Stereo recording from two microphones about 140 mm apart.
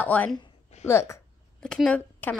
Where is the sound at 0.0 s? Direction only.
10° left (ahead or behind).